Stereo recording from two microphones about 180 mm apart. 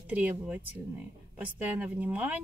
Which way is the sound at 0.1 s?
10° right (ahead or behind).